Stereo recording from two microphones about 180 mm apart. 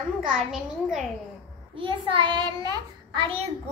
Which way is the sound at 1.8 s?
30° right (ahead or behind).